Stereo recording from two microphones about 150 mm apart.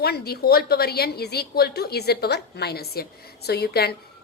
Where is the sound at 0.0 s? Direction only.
90° left.